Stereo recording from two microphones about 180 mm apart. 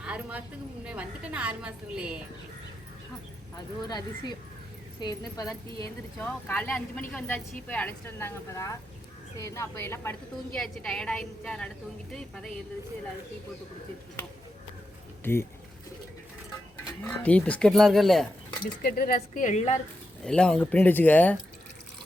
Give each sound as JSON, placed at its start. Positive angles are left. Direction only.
{"t": 0.0, "sound": "a woman's voice", "side_deg": -5}
{"t": 3.8, "sound": "speech", "side_deg": 25}
{"t": 6.1, "sound": "a woman's voice", "side_deg": 10}
{"t": 15.2, "sound": "speech", "side_deg": 15}
{"t": 17.0, "sound": "a woman's voice", "side_deg": 10}
{"t": 18.6, "sound": "speech", "side_deg": 55}
{"t": 20.2, "sound": "speech", "side_deg": 5}